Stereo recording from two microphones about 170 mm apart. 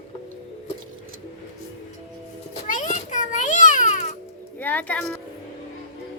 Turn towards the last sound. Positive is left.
turn(degrees=10)  # may be behind; listen again after turning